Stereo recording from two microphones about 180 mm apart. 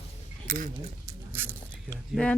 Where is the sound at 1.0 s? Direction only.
10° right (ahead or behind).